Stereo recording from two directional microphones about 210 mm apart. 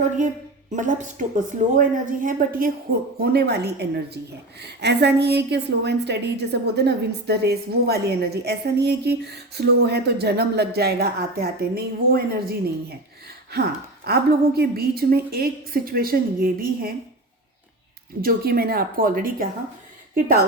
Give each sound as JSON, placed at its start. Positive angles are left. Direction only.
{"t": 0.7, "sound": "a woman's voice", "side_deg": -40}
{"t": 18.2, "sound": "a woman's voice", "side_deg": -45}